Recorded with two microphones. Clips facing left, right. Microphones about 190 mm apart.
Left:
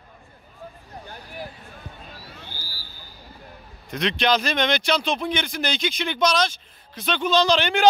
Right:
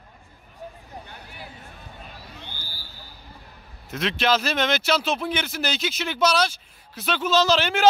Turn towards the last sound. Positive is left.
turn(degrees=-5)  # may be behind; listen again after turning